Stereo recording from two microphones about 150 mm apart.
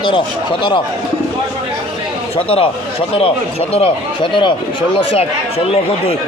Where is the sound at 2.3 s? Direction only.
40° left (ahead or behind).